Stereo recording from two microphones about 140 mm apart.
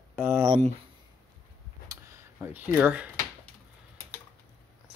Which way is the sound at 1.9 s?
25° right (ahead or behind).